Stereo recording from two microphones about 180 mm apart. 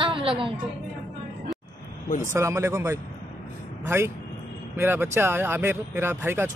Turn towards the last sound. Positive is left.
turn(degrees=-10)  # may be behind; listen again after turning